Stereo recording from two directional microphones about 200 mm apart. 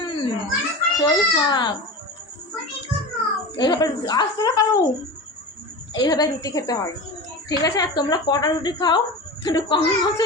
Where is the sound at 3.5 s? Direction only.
20° left (ahead or behind).